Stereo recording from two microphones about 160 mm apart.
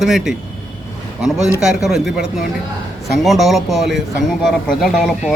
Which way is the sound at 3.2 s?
Centre (ahead or behind).